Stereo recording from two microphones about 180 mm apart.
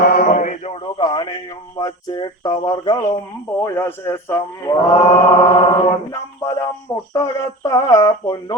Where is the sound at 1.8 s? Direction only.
25° left (ahead or behind).